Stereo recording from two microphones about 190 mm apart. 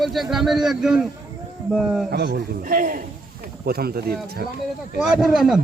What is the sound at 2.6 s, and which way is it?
Speech, 45° right (ahead or behind).